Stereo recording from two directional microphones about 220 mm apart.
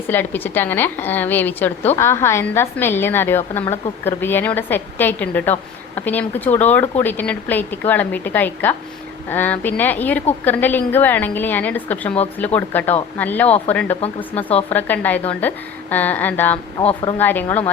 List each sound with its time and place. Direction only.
0.1 s a woman's voice: 10° left (ahead or behind)
16.7 s speech: 20° left (ahead or behind)
17.2 s a woman's voice: 10° left (ahead or behind)